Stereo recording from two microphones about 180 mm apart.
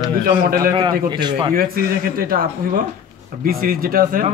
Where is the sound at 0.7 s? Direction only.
25° right (ahead or behind).